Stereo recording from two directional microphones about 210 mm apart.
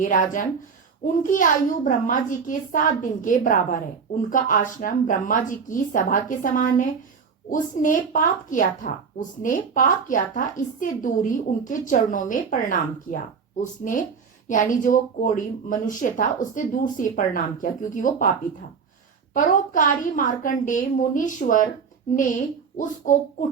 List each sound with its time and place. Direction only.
0.0 s a woman's voice: 40° left (ahead or behind)
19.3 s a woman's voice: 40° left (ahead or behind)
23.1 s a woman's voice: 40° left (ahead or behind)